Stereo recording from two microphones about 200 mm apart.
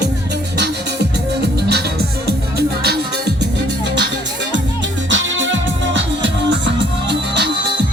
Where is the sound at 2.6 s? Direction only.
55° right (ahead or behind).